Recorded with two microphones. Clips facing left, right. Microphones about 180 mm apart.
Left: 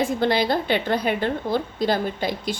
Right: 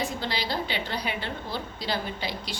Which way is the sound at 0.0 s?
55° left (ahead or behind).